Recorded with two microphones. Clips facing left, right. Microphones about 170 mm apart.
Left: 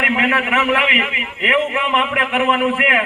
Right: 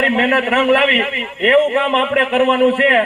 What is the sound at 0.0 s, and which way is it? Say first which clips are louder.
A man's voice: right 4 dB; 40° right (ahead or behind).